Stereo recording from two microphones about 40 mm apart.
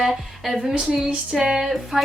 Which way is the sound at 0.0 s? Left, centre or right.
Centre.